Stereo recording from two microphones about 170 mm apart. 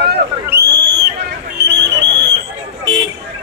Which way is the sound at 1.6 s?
90° right.